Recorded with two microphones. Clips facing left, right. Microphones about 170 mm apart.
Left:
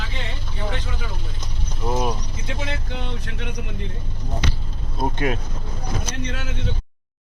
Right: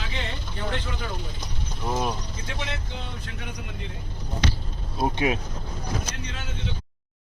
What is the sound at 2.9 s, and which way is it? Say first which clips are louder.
Vehicle: left 5 dB; 65° left (ahead or behind).